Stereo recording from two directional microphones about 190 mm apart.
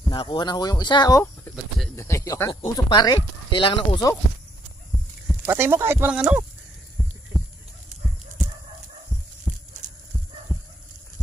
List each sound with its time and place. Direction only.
0.1 s speech: 25° left (ahead or behind)
5.3 s speech: 10° right (ahead or behind)
7.0 s heart sounds: 5° right (ahead or behind)
9.5 s heart sounds: 5° right (ahead or behind)